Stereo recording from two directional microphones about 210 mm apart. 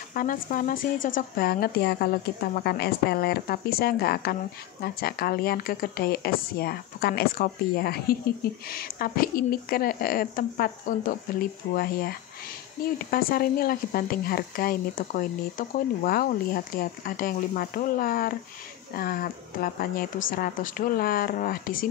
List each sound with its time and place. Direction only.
0.1 s speech: 40° left (ahead or behind)